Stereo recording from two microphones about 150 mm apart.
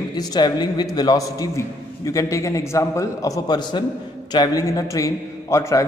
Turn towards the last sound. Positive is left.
turn(degrees=20)  # may be behind; listen again after turning